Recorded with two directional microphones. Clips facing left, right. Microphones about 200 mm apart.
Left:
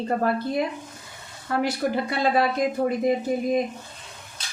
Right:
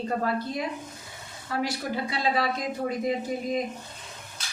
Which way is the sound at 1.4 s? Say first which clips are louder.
Left 5 dB; 50° left (ahead or behind).